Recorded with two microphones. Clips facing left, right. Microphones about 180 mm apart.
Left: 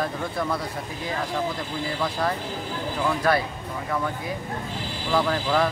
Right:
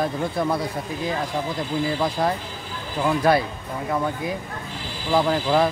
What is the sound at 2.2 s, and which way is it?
Speech, 20° right (ahead or behind).